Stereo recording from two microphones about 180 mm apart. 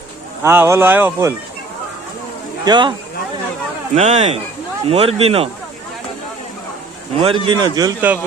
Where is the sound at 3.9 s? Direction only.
40° right (ahead or behind).